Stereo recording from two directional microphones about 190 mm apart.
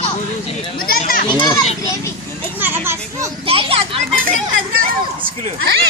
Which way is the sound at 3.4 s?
30° right (ahead or behind).